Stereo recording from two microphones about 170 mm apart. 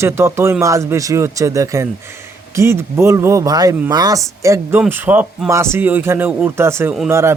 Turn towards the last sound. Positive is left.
turn(degrees=-15)  # may be behind; listen again after turning